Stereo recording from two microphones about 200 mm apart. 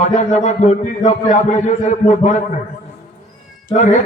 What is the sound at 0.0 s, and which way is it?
A man's voice, 35° left (ahead or behind).